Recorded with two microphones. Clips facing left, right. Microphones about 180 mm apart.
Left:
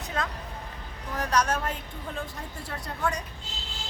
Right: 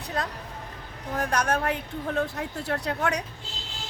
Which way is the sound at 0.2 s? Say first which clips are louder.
Right 1 dB; 35° right (ahead or behind).